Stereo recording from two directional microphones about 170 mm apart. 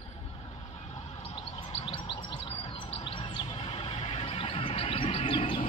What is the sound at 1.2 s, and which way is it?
Chirp, 35° left (ahead or behind).